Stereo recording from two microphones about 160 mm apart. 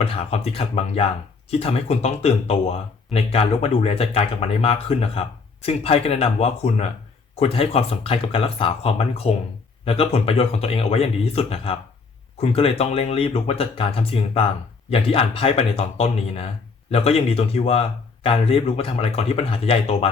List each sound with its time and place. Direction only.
0.0 s speech: 40° left (ahead or behind)